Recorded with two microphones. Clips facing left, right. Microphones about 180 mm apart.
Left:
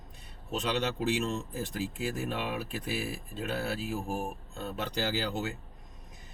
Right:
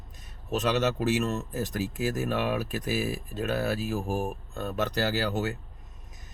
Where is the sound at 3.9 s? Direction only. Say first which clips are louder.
Right 4 dB; 90° right; by 5.2 s 70° right (ahead or behind).